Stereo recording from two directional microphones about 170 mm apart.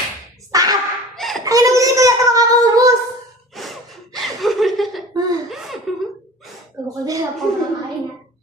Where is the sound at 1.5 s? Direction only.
20° right (ahead or behind).